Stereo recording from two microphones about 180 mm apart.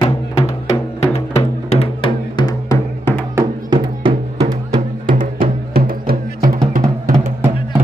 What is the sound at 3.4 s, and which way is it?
Music, 25° right (ahead or behind).